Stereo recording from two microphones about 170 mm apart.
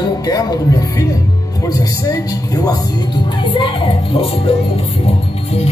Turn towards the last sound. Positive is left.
turn(degrees=35)  # may be behind; listen again after turning